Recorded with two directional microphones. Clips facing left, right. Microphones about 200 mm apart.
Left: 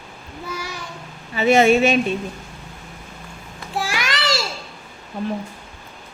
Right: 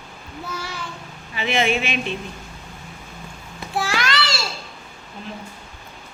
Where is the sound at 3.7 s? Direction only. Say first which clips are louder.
Right 2 dB; 15° left (ahead or behind).